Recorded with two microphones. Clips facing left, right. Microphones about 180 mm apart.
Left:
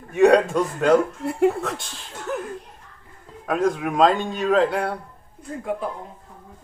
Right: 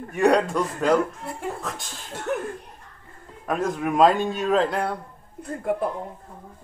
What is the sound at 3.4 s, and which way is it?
A man's voice, centre (ahead or behind).